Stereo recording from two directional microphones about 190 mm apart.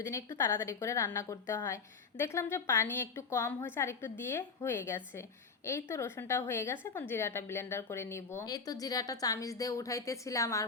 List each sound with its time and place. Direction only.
0.0 s a woman's voice: 15° left (ahead or behind)